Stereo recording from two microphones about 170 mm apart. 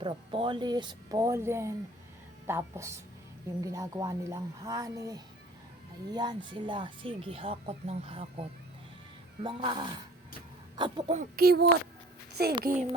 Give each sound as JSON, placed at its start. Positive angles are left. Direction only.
{"t": 0.0, "sound": "speech", "side_deg": -30}
{"t": 11.1, "sound": "child singing", "side_deg": -55}